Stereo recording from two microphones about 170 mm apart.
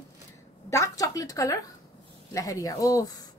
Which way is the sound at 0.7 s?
20° left (ahead or behind).